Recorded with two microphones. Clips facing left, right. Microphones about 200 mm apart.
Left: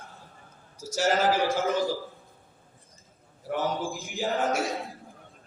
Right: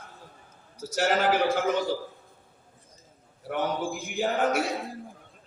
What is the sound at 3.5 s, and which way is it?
A man's voice, 60° right (ahead or behind).